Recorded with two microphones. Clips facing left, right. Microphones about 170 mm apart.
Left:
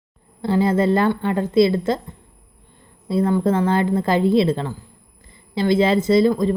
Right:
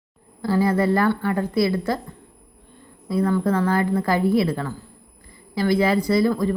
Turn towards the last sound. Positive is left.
turn(degrees=20)  # may be behind; listen again after turning